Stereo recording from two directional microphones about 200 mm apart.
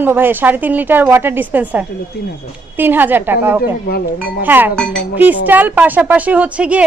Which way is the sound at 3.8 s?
50° left (ahead or behind).